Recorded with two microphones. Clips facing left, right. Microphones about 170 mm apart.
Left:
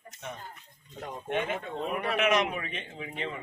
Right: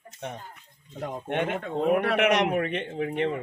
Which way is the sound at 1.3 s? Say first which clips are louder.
Right 3 dB; 65° right (ahead or behind).